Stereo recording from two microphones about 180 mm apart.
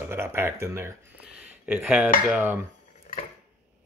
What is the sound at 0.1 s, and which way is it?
Speech, 15° right (ahead or behind).